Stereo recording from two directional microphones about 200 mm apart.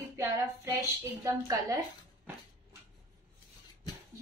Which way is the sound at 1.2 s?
15° right (ahead or behind).